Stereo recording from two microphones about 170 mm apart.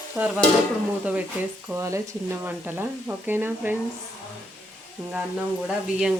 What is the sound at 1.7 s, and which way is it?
Speech, 15° right (ahead or behind).